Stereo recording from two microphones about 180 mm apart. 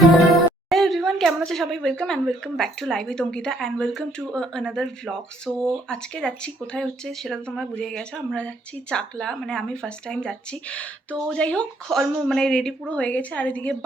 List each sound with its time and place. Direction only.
0.7 s a woman's voice: centre (ahead or behind)